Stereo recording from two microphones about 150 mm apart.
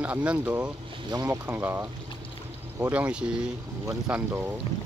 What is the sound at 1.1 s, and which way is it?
Speech, 25° right (ahead or behind).